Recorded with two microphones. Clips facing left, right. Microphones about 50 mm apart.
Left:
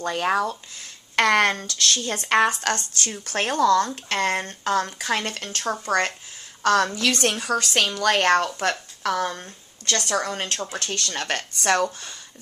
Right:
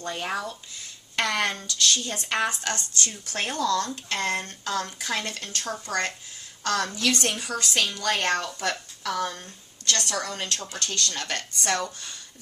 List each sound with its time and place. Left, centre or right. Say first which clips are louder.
0.0 s a woman's voice: left 7 dB; left
8.5 s a woman's voice: left 4 dB; left
9.0 s a woman's voice: left 4 dB; left